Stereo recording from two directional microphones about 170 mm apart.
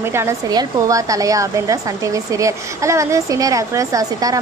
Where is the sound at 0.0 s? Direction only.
15° right (ahead or behind).